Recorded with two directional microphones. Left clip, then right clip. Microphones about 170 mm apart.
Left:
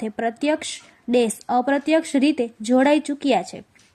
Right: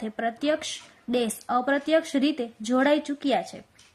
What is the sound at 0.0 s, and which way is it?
Speech, 15° left (ahead or behind).